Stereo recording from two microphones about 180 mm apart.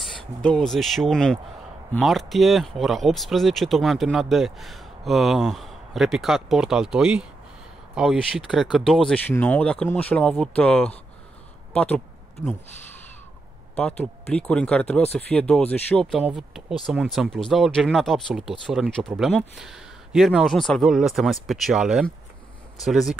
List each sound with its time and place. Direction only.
0.0 s speech: 5° left (ahead or behind)
13.7 s speech: 5° left (ahead or behind)